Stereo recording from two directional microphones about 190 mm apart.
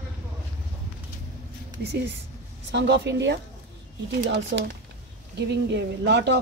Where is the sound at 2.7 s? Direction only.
65° right (ahead or behind).